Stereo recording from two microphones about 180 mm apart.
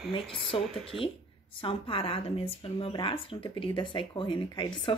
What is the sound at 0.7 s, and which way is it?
Speech, centre (ahead or behind).